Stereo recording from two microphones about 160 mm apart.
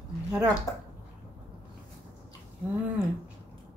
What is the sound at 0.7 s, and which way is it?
Speech, 20° left (ahead or behind).